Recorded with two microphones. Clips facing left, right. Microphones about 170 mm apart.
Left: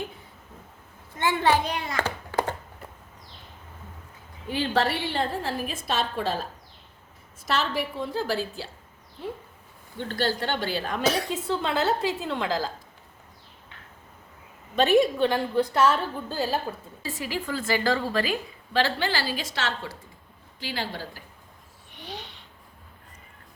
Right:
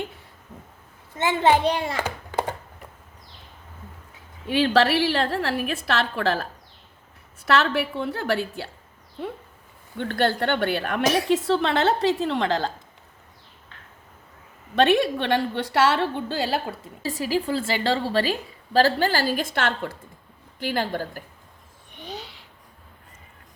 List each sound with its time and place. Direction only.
1.2 s a child's voice: 20° right (ahead or behind)
4.4 s a woman's voice: 90° right; by 8.7 s 65° right (ahead or behind)
10.0 s a woman's voice: 60° right (ahead or behind)
11.1 s a woman's voice: 75° right (ahead or behind)
14.8 s a woman's voice: 70° right (ahead or behind)
17.1 s a woman's voice: 35° right (ahead or behind)